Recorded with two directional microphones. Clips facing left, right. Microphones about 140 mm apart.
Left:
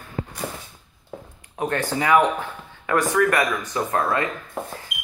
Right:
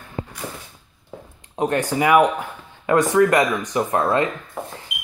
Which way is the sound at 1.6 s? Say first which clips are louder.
Right 4 dB; 20° right (ahead or behind).